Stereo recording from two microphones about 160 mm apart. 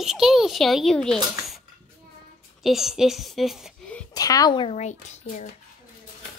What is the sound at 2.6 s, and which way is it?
Speech, centre (ahead or behind).